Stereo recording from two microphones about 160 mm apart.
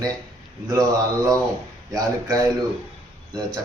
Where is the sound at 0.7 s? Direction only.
20° right (ahead or behind).